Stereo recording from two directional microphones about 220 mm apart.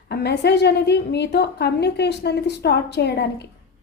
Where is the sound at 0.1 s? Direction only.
50° left (ahead or behind).